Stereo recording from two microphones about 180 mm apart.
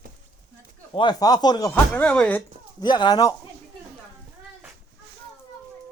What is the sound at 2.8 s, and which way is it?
Speech, 25° left (ahead or behind).